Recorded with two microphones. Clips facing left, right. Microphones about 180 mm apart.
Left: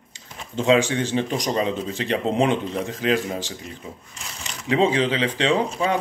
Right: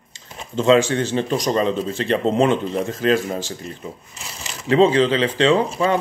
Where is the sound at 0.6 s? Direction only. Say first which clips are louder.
Right 3 dB; 15° left (ahead or behind).